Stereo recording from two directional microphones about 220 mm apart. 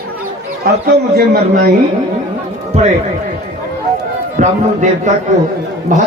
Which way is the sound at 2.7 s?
30° right (ahead or behind).